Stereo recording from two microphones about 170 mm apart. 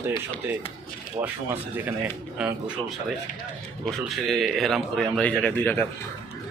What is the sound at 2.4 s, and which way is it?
Speech, 5° right (ahead or behind).